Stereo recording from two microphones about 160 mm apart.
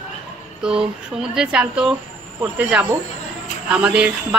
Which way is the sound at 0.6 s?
5° right (ahead or behind).